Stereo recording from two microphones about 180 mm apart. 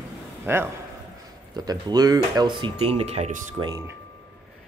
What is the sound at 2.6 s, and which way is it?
Speech, 30° right (ahead or behind).